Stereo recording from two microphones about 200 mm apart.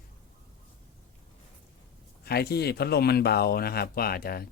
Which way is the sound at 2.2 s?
50° left (ahead or behind).